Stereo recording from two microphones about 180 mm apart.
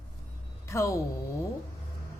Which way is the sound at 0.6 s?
15° left (ahead or behind).